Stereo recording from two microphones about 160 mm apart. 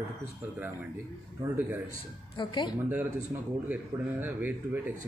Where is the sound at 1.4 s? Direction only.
20° right (ahead or behind).